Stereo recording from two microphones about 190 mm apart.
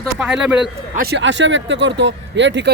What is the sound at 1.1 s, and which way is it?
Speech, 70° right (ahead or behind).